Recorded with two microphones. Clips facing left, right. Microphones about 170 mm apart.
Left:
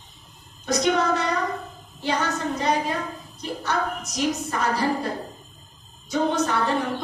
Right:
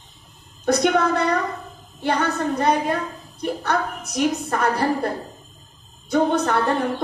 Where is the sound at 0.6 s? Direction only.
55° right (ahead or behind).